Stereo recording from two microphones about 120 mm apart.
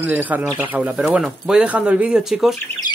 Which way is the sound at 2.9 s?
35° left (ahead or behind).